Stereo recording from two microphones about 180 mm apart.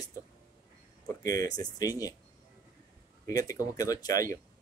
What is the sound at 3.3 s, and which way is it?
Speech, 20° left (ahead or behind).